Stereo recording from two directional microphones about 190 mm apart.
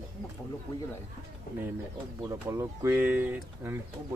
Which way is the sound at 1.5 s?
50° left (ahead or behind).